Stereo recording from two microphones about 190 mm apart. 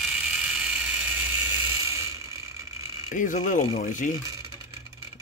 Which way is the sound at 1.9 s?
15° right (ahead or behind).